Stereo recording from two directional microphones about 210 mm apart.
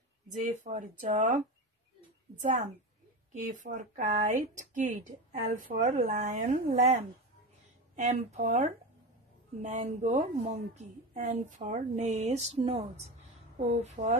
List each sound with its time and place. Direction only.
0.3 s a woman's voice: 35° right (ahead or behind)